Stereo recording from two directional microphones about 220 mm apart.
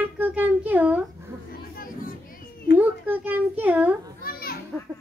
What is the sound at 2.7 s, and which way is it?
A child's voice, 10° right (ahead or behind).